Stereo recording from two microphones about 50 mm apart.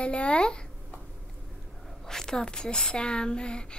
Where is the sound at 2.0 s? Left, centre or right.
Centre.